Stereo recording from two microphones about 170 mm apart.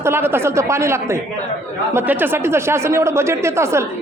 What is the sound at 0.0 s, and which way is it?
Speech, 15° right (ahead or behind).